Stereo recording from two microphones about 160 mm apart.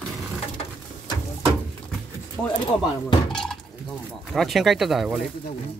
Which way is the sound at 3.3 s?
5° left (ahead or behind).